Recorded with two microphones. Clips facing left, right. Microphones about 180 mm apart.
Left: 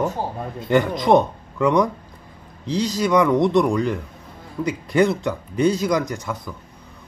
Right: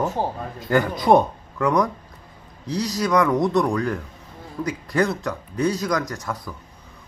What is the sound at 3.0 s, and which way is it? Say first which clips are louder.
Speech: left 2 dB; 5° left (ahead or behind).